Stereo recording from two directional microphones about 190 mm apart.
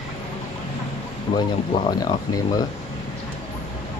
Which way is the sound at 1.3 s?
20° left (ahead or behind).